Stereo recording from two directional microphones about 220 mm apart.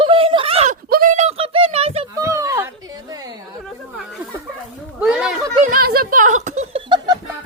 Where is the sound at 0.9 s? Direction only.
35° right (ahead or behind).